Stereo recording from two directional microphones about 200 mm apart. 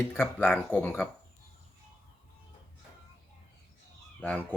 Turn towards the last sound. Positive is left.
turn(degrees=5)  # may be behind; listen again after turning